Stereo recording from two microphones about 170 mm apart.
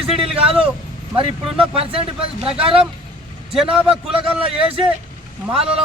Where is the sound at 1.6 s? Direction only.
35° right (ahead or behind).